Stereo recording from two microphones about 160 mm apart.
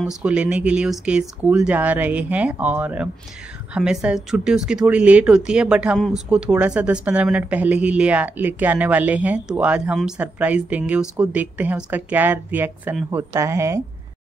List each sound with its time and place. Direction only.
0.2 s speech: 5° right (ahead or behind)